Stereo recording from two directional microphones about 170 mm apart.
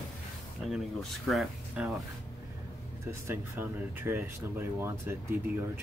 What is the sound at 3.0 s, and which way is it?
Speech, 15° right (ahead or behind).